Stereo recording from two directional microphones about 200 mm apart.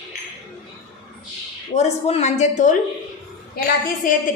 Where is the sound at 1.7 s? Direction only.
35° left (ahead or behind).